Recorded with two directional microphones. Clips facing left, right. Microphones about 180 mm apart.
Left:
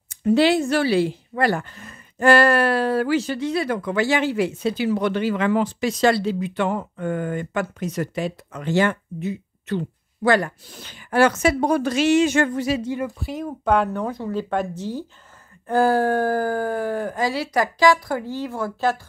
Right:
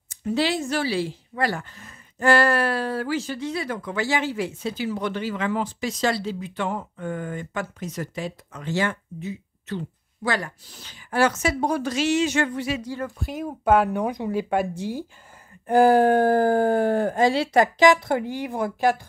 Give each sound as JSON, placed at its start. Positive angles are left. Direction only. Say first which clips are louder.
{"t": 0.1, "sound": "speech", "louder": "left 7 dB", "side_deg": 60}
{"t": 13.0, "sound": "speech", "louder": "left 2 dB", "side_deg": 0}
{"t": 13.8, "sound": "speech", "louder": "right 1 dB", "side_deg": -15}